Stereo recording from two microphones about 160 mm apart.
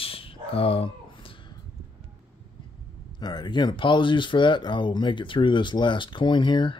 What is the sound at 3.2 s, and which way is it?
Speech, 25° left (ahead or behind).